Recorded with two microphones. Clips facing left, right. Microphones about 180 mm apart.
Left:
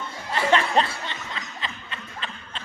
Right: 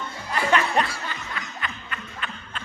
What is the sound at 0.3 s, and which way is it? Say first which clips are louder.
Snicker: left 1 dB; 25° left (ahead or behind).